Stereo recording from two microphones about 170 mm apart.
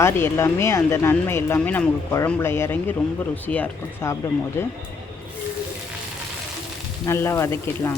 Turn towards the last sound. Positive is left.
turn(degrees=15)  # may be behind; listen again after turning